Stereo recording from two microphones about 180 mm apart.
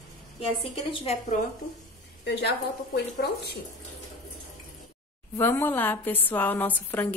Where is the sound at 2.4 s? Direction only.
65° left (ahead or behind).